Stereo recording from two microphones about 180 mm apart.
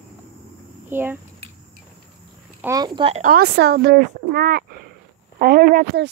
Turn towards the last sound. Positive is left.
turn(degrees=-60)  # may be behind; listen again after turning